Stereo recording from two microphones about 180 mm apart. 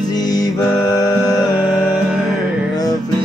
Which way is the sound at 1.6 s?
5° right (ahead or behind).